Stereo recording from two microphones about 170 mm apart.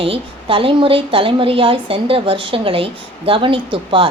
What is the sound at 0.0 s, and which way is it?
Speech, 30° right (ahead or behind).